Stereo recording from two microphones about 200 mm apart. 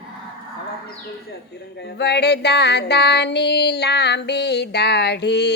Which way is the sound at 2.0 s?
55° left (ahead or behind).